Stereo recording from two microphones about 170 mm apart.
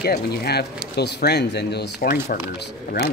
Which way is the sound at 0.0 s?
65° left (ahead or behind).